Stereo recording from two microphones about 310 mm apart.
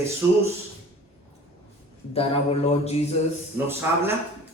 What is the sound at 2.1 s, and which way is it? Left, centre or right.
Speech, centre.